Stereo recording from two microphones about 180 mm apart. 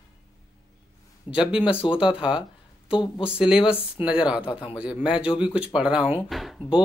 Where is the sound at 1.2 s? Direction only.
5° right (ahead or behind).